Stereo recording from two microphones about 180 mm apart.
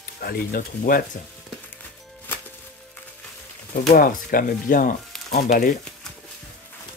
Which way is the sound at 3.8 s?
55° left (ahead or behind).